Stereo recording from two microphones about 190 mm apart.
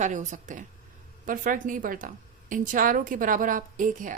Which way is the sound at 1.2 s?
45° right (ahead or behind).